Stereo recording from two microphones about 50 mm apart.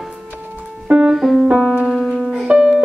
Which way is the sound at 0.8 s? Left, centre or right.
Centre.